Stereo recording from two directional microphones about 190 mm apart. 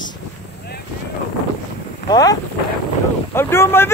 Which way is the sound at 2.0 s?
20° left (ahead or behind).